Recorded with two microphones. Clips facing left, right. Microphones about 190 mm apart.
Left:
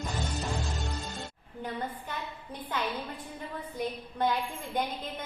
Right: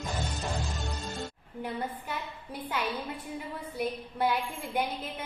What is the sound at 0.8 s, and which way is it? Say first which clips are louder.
Music: right 1 dB; centre (ahead or behind).